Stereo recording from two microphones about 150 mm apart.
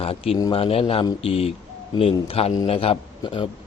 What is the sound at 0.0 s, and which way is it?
Speech, 40° left (ahead or behind).